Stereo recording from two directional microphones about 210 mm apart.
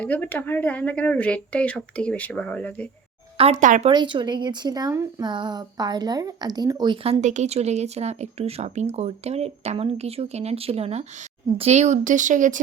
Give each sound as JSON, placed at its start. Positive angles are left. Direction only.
{"t": 0.0, "sound": "speech", "side_deg": 5}
{"t": 3.3, "sound": "speech", "side_deg": -30}
{"t": 3.9, "sound": "speech", "side_deg": -20}